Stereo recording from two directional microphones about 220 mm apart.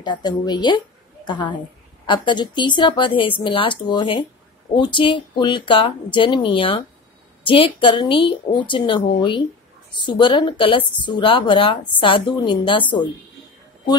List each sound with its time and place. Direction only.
0.0 s a woman's voice: 20° left (ahead or behind)